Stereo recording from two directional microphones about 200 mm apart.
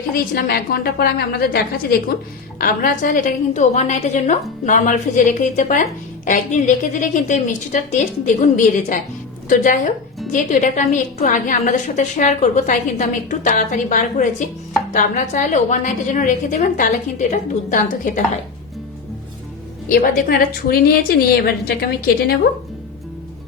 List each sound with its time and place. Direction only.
0.1 s a woman's voice: 50° left (ahead or behind)
19.9 s a woman's voice: 45° left (ahead or behind)